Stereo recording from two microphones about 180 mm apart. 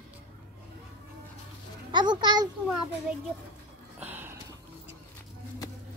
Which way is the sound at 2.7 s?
5° right (ahead or behind).